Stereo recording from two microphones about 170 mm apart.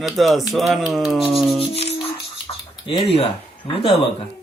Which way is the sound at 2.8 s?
30° left (ahead or behind).